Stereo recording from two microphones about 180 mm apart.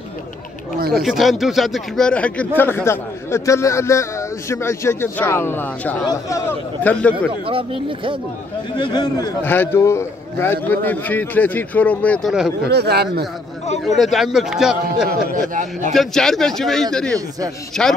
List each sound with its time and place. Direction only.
0.9 s speech: centre (ahead or behind)
7.4 s speech: 30° right (ahead or behind)
8.7 s a man's voice: 25° left (ahead or behind)
9.4 s speech: 10° left (ahead or behind)
12.6 s speech: 65° right (ahead or behind)
13.8 s a man's voice: centre (ahead or behind)
15.3 s a man's voice: 45° right (ahead or behind)
15.9 s a man's voice: centre (ahead or behind)